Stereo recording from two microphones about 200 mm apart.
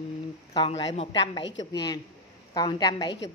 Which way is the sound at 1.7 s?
20° left (ahead or behind).